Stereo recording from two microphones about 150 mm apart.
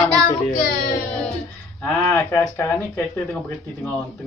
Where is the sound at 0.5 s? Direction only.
90° left.